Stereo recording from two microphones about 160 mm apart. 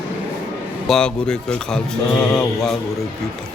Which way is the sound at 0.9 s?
5° left (ahead or behind).